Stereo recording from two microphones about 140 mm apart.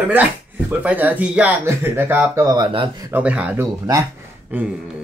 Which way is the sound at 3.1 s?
10° right (ahead or behind).